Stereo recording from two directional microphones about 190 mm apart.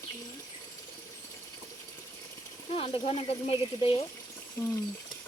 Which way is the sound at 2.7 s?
30° left (ahead or behind).